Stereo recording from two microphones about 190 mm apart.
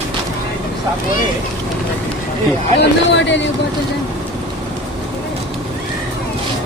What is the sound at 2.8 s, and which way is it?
Speech, 70° left (ahead or behind).